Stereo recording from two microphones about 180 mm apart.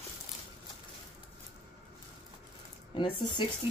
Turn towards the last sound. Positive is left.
turn(degrees=25)  # may be behind; listen again after turning